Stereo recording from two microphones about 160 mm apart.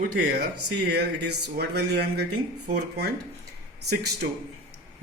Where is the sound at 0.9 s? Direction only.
90° right.